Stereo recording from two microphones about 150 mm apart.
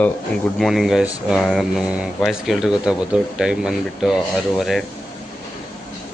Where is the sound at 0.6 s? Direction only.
Centre (ahead or behind).